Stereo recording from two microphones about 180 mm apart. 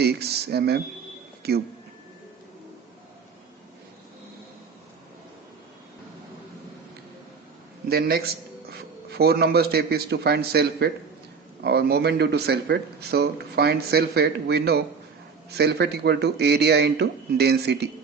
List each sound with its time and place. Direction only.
0.0 s speech: 65° right (ahead or behind)
1.4 s a sound: 60° right (ahead or behind)
7.9 s a man's voice: 60° right (ahead or behind)